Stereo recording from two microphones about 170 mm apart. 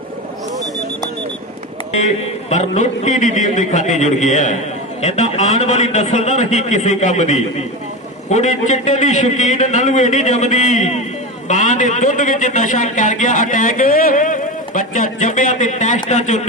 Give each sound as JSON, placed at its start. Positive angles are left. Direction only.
{"t": 1.9, "sound": "a man's voice", "side_deg": 40}